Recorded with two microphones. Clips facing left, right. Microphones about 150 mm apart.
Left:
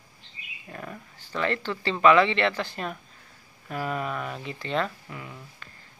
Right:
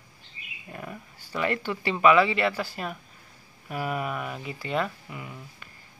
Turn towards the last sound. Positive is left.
turn(degrees=-5)  # may be behind; listen again after turning